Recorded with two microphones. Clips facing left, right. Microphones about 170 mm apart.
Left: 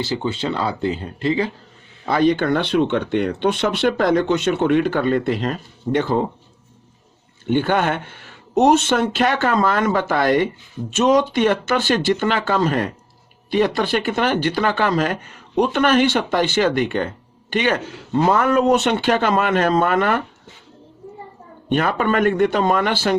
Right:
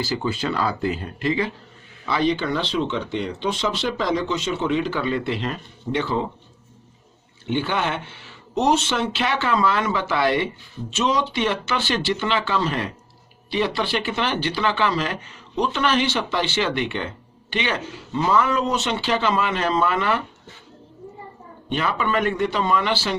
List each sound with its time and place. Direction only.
0.0 s speech: 25° left (ahead or behind)
2.0 s speech: 50° left (ahead or behind)
7.4 s speech: 50° left (ahead or behind)
21.7 s speech: 50° left (ahead or behind)